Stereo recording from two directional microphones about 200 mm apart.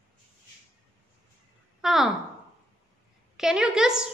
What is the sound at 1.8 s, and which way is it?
Speech, centre (ahead or behind).